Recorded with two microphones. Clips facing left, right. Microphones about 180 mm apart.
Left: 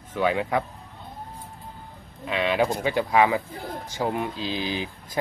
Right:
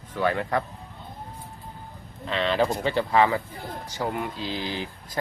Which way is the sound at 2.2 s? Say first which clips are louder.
Even; 10° left (ahead or behind).